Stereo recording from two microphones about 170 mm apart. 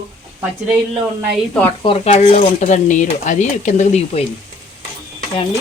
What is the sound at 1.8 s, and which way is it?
Speech, 35° left (ahead or behind).